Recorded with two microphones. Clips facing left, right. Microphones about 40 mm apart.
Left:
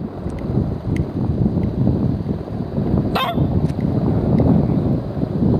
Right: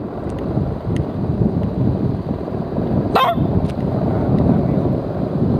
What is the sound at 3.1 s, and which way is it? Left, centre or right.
Honk, centre.